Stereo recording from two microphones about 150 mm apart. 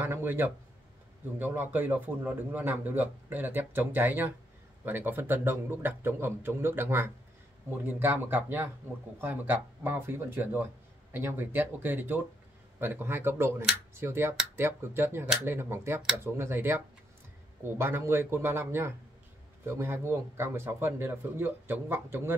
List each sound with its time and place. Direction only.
0.0 s speech: 15° right (ahead or behind)